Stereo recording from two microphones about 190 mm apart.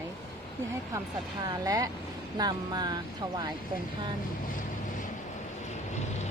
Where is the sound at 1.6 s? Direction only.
20° right (ahead or behind).